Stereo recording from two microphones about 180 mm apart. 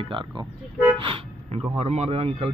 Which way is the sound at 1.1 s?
30° right (ahead or behind).